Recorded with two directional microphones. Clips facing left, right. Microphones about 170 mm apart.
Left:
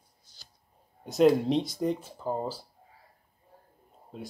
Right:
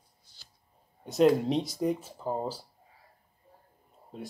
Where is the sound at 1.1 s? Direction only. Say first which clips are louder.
Left 1 dB; centre (ahead or behind).